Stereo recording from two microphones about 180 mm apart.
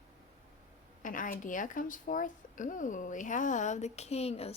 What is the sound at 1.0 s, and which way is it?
Speech, 50° left (ahead or behind).